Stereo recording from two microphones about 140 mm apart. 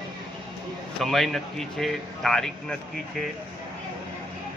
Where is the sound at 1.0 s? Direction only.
Centre (ahead or behind).